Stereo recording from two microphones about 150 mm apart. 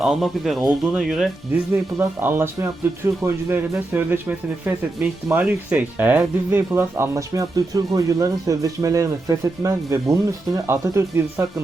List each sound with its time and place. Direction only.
0.0 s speech: centre (ahead or behind)
1.7 s speech: 15° right (ahead or behind)